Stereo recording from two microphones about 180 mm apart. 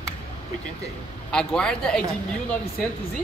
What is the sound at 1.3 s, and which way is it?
Speech, 5° left (ahead or behind).